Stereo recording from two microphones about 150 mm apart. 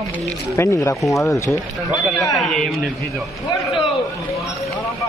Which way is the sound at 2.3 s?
Centre (ahead or behind).